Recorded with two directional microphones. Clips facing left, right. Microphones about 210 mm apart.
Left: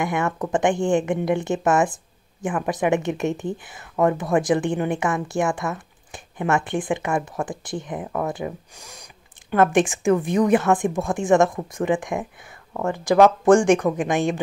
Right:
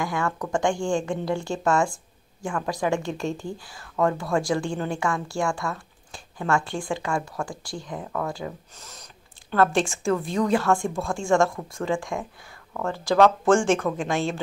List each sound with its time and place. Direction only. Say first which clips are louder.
0.0 s speech: left 4 dB; 20° left (ahead or behind)